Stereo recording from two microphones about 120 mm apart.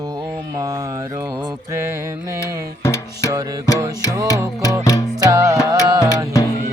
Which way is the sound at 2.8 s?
25° left (ahead or behind).